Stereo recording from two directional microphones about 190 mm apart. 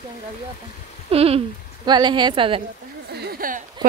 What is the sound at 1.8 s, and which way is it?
Speech, 25° right (ahead or behind).